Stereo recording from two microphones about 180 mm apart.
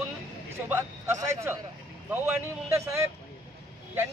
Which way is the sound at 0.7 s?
15° right (ahead or behind).